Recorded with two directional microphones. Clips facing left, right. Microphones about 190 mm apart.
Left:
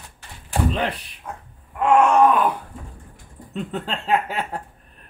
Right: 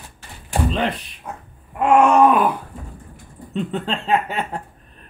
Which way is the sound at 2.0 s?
10° right (ahead or behind).